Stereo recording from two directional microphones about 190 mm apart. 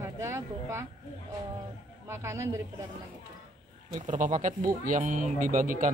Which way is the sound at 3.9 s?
40° right (ahead or behind).